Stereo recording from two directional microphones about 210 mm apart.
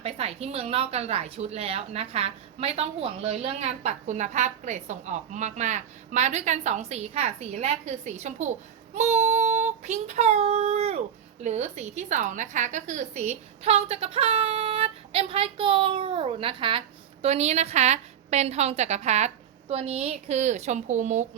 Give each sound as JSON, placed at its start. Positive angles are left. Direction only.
{"t": 0.0, "sound": "a woman's voice", "side_deg": -30}
{"t": 9.0, "sound": "child singing", "side_deg": -35}
{"t": 11.4, "sound": "a woman's voice", "side_deg": -30}